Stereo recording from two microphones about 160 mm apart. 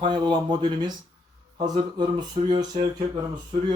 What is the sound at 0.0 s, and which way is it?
Speech, 30° right (ahead or behind).